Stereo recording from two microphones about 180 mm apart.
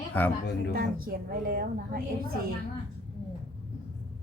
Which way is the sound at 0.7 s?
55° right (ahead or behind).